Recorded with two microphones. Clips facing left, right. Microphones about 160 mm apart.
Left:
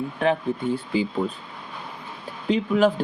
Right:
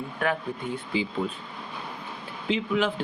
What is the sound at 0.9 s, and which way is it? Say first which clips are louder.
Speech: left 3 dB; 45° left (ahead or behind).